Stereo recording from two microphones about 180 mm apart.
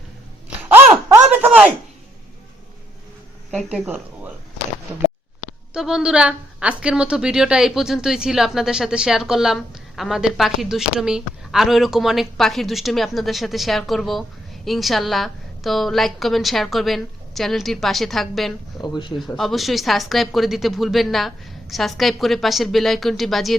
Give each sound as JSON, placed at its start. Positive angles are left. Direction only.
{"t": 1.0, "sound": "a sound", "side_deg": -10}
{"t": 3.5, "sound": "a woman's voice", "side_deg": 5}
{"t": 3.8, "sound": "speech", "side_deg": -10}
{"t": 5.7, "sound": "a woman's voice", "side_deg": -5}
{"t": 18.8, "sound": "speech", "side_deg": 25}
{"t": 19.2, "sound": "a woman's voice", "side_deg": 0}